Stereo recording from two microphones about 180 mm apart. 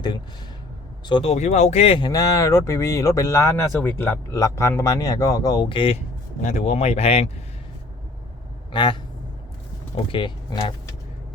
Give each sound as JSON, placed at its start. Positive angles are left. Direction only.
{"t": 1.0, "sound": "speech", "side_deg": 30}
{"t": 8.7, "sound": "speech", "side_deg": 25}
{"t": 10.1, "sound": "speech", "side_deg": 25}